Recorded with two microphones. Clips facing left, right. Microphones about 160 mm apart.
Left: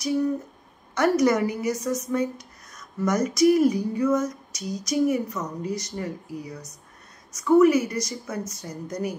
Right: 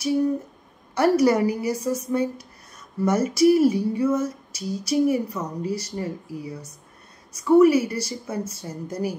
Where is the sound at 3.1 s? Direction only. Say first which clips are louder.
Right 2 dB; 30° right (ahead or behind).